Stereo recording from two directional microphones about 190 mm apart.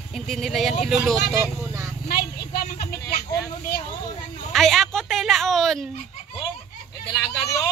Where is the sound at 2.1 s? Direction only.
50° left (ahead or behind).